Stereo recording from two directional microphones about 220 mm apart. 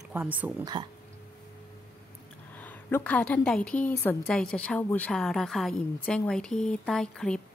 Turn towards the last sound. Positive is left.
turn(degrees=5)  # may be behind; listen again after turning